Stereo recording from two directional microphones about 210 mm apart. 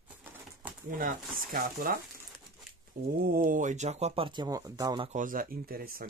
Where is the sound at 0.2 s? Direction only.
10° right (ahead or behind).